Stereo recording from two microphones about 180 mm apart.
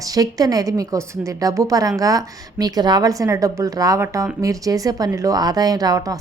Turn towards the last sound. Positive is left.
turn(degrees=-20)  # may be behind; listen again after turning